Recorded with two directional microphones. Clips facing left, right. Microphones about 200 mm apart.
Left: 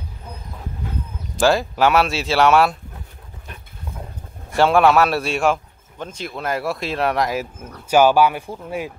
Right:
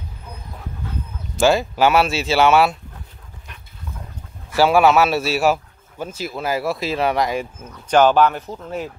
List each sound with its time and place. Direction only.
1.4 s speech: centre (ahead or behind)
4.6 s speech: 5° right (ahead or behind)